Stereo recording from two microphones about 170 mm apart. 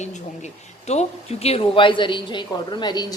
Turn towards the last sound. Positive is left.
turn(degrees=25)  # may be behind; listen again after turning